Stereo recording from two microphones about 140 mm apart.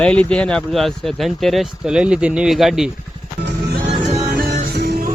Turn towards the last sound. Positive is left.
turn(degrees=-70)  # may be behind; listen again after turning